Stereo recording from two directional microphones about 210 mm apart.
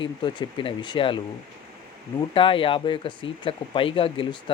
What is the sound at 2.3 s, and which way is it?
Speech, 25° left (ahead or behind).